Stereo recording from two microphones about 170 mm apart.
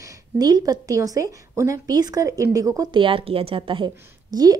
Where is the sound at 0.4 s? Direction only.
20° right (ahead or behind).